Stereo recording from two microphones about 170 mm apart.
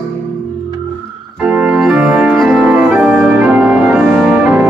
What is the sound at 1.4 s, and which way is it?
Organ, 5° right (ahead or behind).